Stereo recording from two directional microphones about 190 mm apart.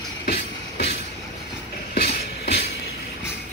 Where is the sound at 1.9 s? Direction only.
60° left (ahead or behind).